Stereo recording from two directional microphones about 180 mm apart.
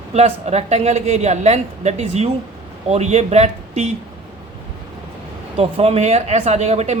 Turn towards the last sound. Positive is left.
turn(degrees=-35)  # may be behind; listen again after turning